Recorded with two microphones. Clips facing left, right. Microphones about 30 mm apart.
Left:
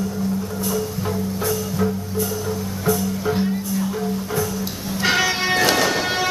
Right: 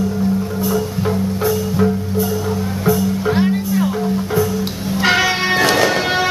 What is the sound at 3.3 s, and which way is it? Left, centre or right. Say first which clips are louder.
Music: right 5 dB; right.